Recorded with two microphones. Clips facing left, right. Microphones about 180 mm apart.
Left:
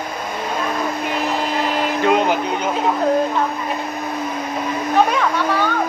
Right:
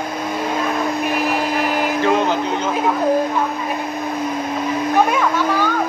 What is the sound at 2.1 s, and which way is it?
Music, 15° left (ahead or behind).